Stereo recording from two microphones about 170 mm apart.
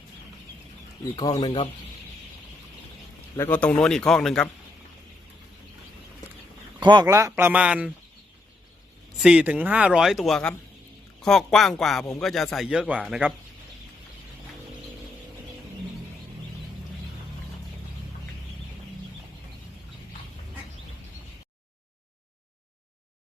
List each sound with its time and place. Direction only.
1.1 s speech: 20° left (ahead or behind)
3.3 s speech: 10° left (ahead or behind)
6.7 s speech: 25° right (ahead or behind); by 7.9 s 5° right (ahead or behind)
9.2 s speech: 5° right (ahead or behind)